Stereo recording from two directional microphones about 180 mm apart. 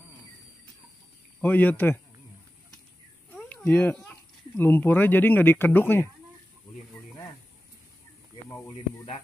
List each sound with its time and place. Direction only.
1.4 s speech: 10° left (ahead or behind)
3.3 s speech: 10° left (ahead or behind)
8.7 s speech: 30° left (ahead or behind)